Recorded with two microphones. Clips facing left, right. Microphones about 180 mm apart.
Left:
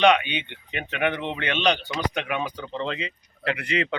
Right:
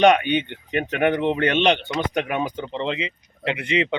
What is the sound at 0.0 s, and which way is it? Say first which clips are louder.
Speech: right 4 dB; 45° right (ahead or behind).